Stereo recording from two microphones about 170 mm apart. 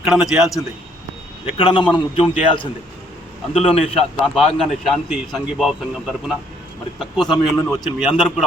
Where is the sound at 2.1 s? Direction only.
30° left (ahead or behind).